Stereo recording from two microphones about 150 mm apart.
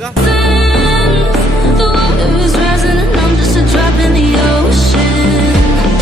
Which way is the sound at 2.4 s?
Centre (ahead or behind).